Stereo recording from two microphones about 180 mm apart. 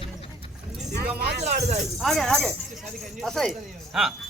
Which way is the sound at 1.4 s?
40° right (ahead or behind).